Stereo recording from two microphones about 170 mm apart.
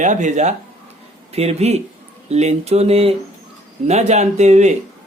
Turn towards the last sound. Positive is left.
turn(degrees=-40)  # may be behind; listen again after turning